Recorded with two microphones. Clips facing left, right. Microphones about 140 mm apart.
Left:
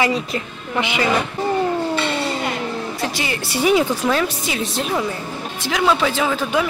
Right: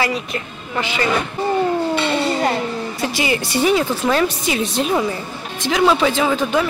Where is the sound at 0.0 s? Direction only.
25° left (ahead or behind).